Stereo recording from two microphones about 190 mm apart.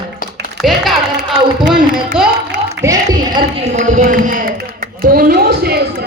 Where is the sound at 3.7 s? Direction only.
40° right (ahead or behind).